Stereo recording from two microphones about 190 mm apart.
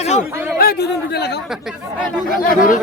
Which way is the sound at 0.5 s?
55° left (ahead or behind).